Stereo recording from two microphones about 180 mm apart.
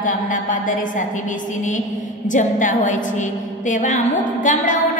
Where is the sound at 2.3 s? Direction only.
45° left (ahead or behind).